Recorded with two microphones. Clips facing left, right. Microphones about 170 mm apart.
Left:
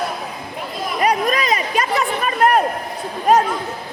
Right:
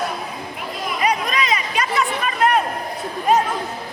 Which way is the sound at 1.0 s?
45° left (ahead or behind).